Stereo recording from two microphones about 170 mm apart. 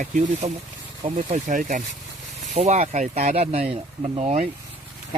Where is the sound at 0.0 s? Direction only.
45° right (ahead or behind).